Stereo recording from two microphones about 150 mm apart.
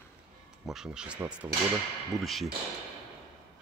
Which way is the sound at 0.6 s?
5° right (ahead or behind).